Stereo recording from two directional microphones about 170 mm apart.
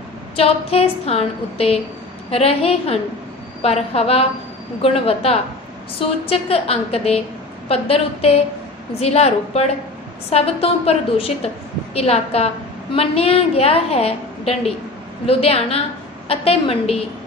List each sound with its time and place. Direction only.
0.4 s a woman's voice: 35° left (ahead or behind)